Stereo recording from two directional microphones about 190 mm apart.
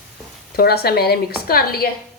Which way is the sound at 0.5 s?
55° left (ahead or behind).